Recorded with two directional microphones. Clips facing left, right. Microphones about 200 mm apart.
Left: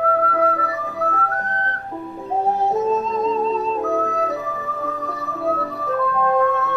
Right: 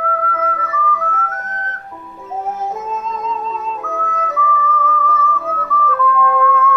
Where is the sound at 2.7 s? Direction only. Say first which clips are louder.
Left 5 dB; 35° left (ahead or behind).